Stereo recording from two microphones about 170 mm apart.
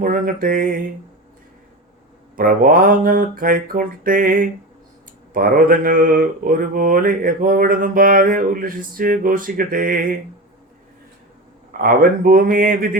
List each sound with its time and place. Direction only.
0.0 s mantra: 55° right (ahead or behind)
2.3 s mantra: 55° right (ahead or behind)
11.8 s mantra: 60° right (ahead or behind)